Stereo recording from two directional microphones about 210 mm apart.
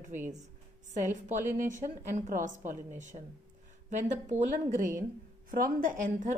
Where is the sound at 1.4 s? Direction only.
10° right (ahead or behind).